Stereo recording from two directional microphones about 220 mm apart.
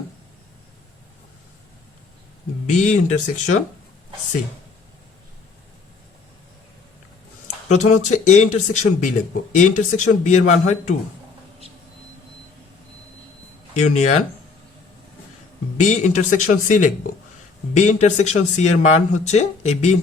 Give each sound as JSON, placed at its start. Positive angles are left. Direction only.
{"t": 2.6, "sound": "speech", "side_deg": 35}
{"t": 7.7, "sound": "speech", "side_deg": 35}
{"t": 13.7, "sound": "speech", "side_deg": 30}
{"t": 15.8, "sound": "speech", "side_deg": 35}